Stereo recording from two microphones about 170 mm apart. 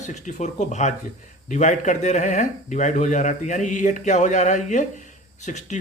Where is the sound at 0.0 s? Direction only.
45° left (ahead or behind).